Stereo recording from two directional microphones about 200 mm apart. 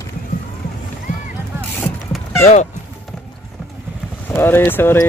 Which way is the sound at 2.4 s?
35° left (ahead or behind).